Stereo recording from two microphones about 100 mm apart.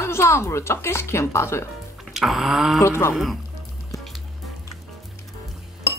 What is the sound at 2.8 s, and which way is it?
Speech, 25° left (ahead or behind).